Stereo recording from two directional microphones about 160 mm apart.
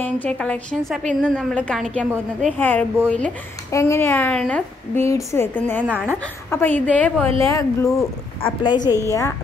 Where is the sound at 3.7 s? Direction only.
20° left (ahead or behind).